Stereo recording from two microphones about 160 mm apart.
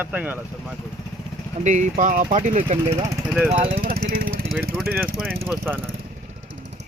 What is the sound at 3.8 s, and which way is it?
Speech, 65° right (ahead or behind).